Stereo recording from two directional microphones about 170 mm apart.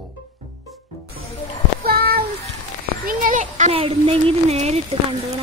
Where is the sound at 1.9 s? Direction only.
65° right (ahead or behind).